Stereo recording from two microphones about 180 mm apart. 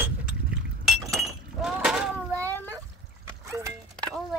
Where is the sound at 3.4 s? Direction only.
15° right (ahead or behind).